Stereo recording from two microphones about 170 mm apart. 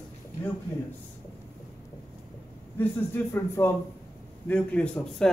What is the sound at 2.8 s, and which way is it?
A man's voice, 10° left (ahead or behind).